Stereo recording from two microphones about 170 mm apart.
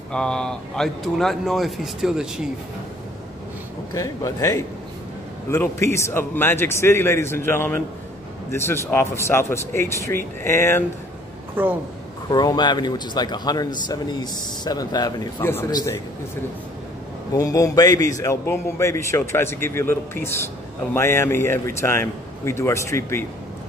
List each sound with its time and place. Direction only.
0.1 s speech: 5° left (ahead or behind)
3.9 s a man's voice: 20° left (ahead or behind)
11.6 s speech: 10° right (ahead or behind)
12.3 s a man's voice: 25° left (ahead or behind)
17.3 s a man's voice: 20° left (ahead or behind)